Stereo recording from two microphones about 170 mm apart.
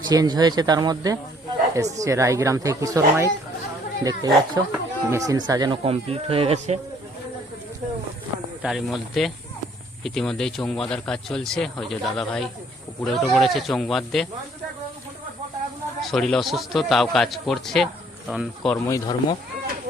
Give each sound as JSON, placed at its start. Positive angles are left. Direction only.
{"t": 0.1, "sound": "speech", "side_deg": -25}
{"t": 5.8, "sound": "speech", "side_deg": -35}
{"t": 8.6, "sound": "speech", "side_deg": 0}
{"t": 16.0, "sound": "speech", "side_deg": 0}
{"t": 18.9, "sound": "speech", "side_deg": 25}